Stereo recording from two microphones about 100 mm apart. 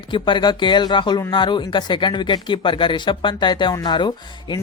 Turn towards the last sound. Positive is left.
turn(degrees=45)  # may be behind; listen again after turning